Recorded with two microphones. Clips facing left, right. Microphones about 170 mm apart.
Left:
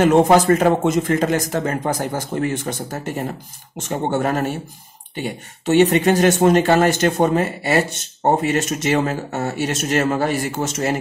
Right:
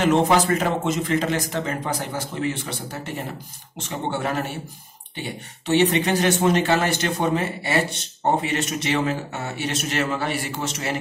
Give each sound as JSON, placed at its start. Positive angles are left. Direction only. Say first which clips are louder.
{"t": 0.0, "sound": "speech", "louder": "left 5 dB", "side_deg": 50}
{"t": 5.7, "sound": "speech", "louder": "left 5 dB", "side_deg": 45}